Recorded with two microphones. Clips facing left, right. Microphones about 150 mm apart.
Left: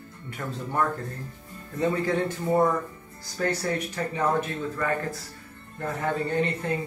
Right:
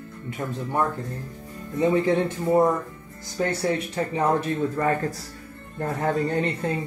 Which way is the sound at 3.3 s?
25° right (ahead or behind).